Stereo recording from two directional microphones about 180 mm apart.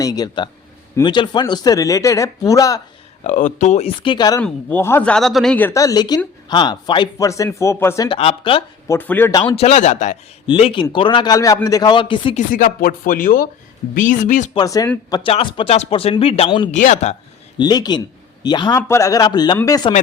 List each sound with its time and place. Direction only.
0.0 s speech: 20° left (ahead or behind)
3.2 s speech: 45° left (ahead or behind); by 4.4 s 25° left (ahead or behind)
4.4 s speech: 10° left (ahead or behind)
8.1 s speech: 30° left (ahead or behind)
8.9 s speech: 10° left (ahead or behind)
9.5 s speech: 35° left (ahead or behind)
10.4 s speech: 30° left (ahead or behind)
12.5 s speech: 50° left (ahead or behind)
14.5 s speech: 20° left (ahead or behind)
16.7 s speech: 45° left (ahead or behind)
17.6 s speech: 25° left (ahead or behind)